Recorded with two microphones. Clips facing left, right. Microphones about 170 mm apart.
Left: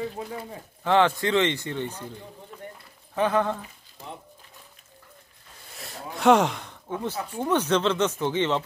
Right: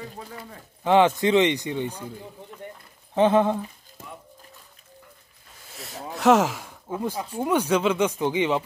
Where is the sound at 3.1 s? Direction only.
25° right (ahead or behind).